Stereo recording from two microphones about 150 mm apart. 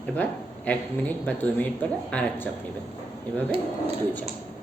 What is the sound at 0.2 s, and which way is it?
Speech, 10° left (ahead or behind).